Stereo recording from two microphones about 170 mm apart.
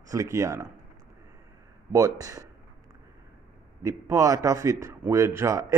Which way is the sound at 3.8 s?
20° right (ahead or behind).